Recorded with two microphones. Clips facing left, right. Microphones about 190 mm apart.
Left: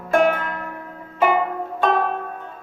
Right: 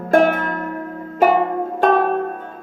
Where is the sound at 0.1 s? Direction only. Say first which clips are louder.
Right 3 dB; 50° right (ahead or behind).